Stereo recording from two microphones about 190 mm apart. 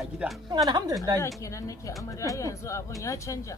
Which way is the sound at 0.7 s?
20° right (ahead or behind).